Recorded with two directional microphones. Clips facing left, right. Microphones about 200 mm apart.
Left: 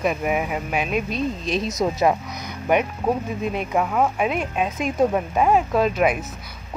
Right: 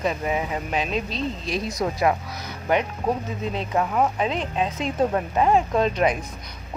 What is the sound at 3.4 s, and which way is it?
Speech, 15° left (ahead or behind).